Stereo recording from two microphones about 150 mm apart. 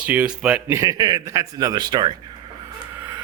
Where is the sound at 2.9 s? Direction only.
15° right (ahead or behind).